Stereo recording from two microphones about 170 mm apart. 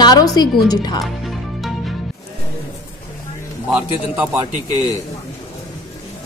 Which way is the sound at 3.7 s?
10° right (ahead or behind).